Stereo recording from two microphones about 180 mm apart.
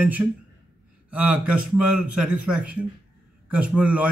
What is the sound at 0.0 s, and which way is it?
A man's voice, 10° right (ahead or behind).